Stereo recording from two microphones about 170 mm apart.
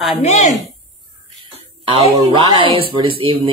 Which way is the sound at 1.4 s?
30° right (ahead or behind).